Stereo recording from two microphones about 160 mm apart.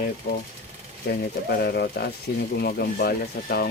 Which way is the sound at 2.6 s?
75° left (ahead or behind).